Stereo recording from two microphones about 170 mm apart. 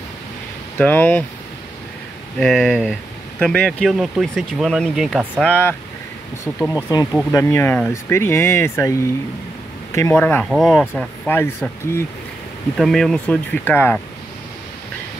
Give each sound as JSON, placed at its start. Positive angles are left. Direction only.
{"t": 0.7, "sound": "speech", "side_deg": 10}
{"t": 2.3, "sound": "speech", "side_deg": 5}
{"t": 5.5, "sound": "speech", "side_deg": 10}
{"t": 6.9, "sound": "speech", "side_deg": 20}
{"t": 10.5, "sound": "speech", "side_deg": 0}
{"t": 11.0, "sound": "speech", "side_deg": 10}
{"t": 12.7, "sound": "speech", "side_deg": 0}